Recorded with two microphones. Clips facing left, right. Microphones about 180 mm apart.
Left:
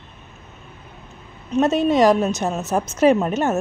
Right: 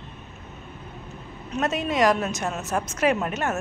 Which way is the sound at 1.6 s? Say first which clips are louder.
Left 7 dB; 30° left (ahead or behind).